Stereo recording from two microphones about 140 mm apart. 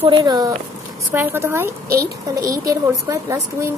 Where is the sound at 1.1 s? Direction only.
15° right (ahead or behind).